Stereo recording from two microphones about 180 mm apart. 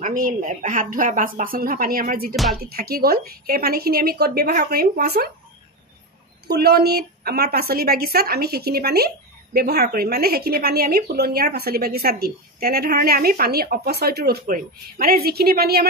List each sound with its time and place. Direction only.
0.0 s speech: 50° right (ahead or behind)
2.3 s speech: centre (ahead or behind)
2.6 s a woman's voice: 55° right (ahead or behind)
6.4 s a woman's voice: 60° right (ahead or behind)